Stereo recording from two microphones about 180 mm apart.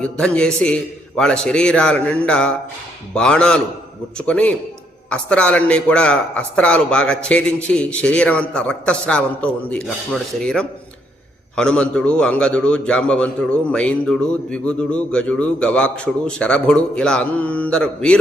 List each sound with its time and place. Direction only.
0.0 s a man's voice: 5° left (ahead or behind)